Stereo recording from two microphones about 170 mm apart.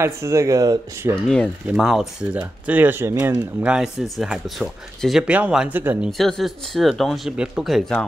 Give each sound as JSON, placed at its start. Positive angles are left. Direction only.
{"t": 0.0, "sound": "speech", "side_deg": -15}
{"t": 1.2, "sound": "speech", "side_deg": 5}
{"t": 6.1, "sound": "speech", "side_deg": 0}